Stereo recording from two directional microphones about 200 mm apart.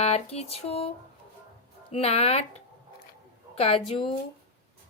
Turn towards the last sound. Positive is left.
turn(degrees=30)  # may be behind; listen again after turning